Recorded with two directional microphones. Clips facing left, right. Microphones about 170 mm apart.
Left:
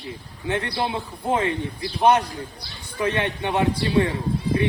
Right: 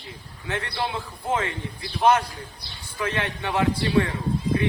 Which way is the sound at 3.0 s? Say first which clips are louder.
Left 4 dB; 20° left (ahead or behind).